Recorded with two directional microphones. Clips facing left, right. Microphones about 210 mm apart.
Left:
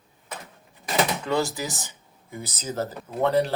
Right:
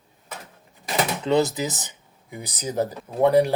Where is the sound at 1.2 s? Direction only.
20° right (ahead or behind).